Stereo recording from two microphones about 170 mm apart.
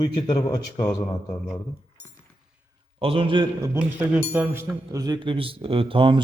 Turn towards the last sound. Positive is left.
turn(degrees=-30)  # may be behind; listen again after turning